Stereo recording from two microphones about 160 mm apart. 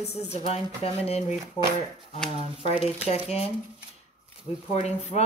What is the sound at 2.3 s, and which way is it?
Speech, 35° left (ahead or behind).